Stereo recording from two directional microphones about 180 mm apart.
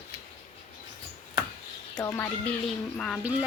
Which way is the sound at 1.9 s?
15° left (ahead or behind).